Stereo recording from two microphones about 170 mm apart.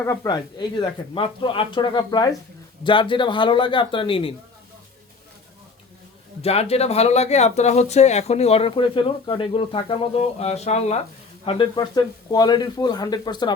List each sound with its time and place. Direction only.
0.0 s speech: 20° left (ahead or behind)
0.8 s speech: 30° left (ahead or behind)
6.4 s speech: 35° left (ahead or behind)
11.4 s speech: 30° left (ahead or behind)